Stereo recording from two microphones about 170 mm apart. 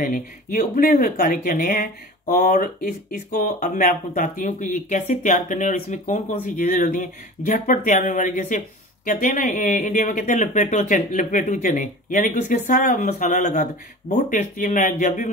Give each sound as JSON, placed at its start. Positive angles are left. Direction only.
{"t": 0.0, "sound": "speech", "side_deg": 55}